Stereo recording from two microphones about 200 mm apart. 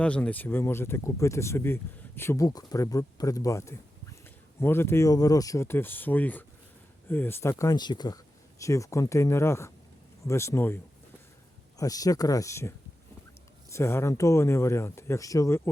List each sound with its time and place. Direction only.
0.0 s speech: 5° left (ahead or behind)
11.8 s speech: 15° left (ahead or behind)